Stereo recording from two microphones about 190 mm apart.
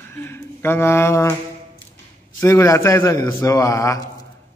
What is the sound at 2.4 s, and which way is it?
Speech, 15° left (ahead or behind).